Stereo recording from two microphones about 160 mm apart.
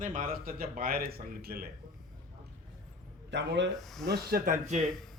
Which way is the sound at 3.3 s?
90° right.